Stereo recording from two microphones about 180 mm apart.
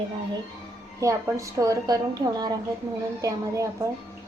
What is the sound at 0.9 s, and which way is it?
A woman's voice, 20° right (ahead or behind).